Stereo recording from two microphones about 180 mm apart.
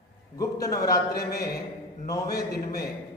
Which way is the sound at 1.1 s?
60° left (ahead or behind).